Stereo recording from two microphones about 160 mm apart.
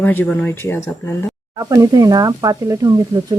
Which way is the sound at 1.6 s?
20° right (ahead or behind).